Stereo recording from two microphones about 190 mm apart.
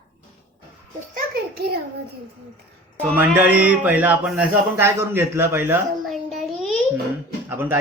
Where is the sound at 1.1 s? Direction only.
50° right (ahead or behind).